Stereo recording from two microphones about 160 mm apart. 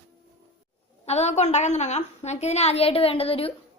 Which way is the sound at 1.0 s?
40° left (ahead or behind).